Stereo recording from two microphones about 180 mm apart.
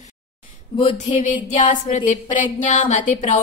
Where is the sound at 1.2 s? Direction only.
45° left (ahead or behind).